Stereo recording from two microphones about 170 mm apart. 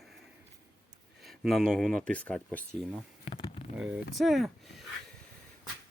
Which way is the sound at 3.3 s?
35° left (ahead or behind).